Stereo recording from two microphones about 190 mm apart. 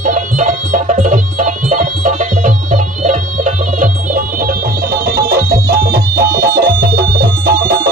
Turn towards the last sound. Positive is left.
turn(degrees=-50)  # may be behind; listen again after turning